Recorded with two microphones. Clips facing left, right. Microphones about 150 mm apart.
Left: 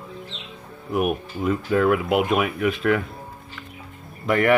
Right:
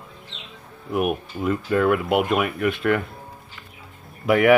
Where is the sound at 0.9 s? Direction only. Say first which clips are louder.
Even; centre (ahead or behind).